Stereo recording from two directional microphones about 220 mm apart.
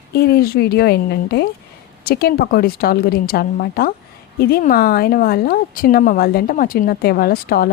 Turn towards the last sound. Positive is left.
turn(degrees=45)  # may be behind; listen again after turning